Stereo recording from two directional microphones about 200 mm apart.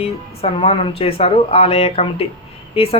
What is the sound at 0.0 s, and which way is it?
Speech, 30° left (ahead or behind).